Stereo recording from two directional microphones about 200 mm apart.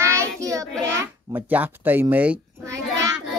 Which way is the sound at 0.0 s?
15° right (ahead or behind).